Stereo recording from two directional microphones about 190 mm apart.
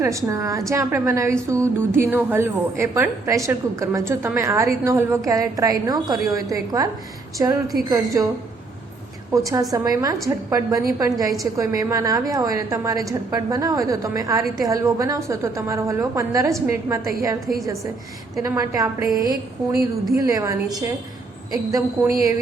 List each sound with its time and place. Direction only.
0.0 s a woman's voice: 15° right (ahead or behind)
9.3 s a woman's voice: 15° right (ahead or behind)
18.3 s a woman's voice: 15° right (ahead or behind)